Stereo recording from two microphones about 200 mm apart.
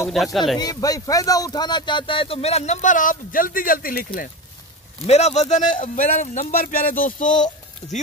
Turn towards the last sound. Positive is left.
turn(degrees=40)  # may be behind; listen again after turning